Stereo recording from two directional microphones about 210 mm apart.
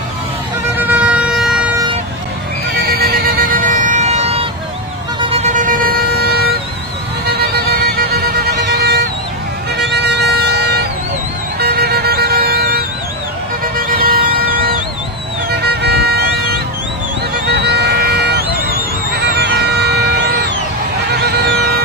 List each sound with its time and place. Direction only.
0.7 s siren: 10° right (ahead or behind)
2.7 s music: 45° right (ahead or behind)
5.2 s vehicle: 30° right (ahead or behind); by 6.4 s 45° right (ahead or behind)
7.2 s music: 50° right (ahead or behind)
9.8 s vehicle: 50° right (ahead or behind)
13.9 s vehicle: 45° right (ahead or behind)
15.5 s music: 50° right (ahead or behind)
17.5 s a sound: 55° right (ahead or behind)
19.1 s music: 50° right (ahead or behind)